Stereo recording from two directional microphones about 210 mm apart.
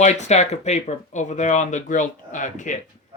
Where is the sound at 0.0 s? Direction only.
35° left (ahead or behind).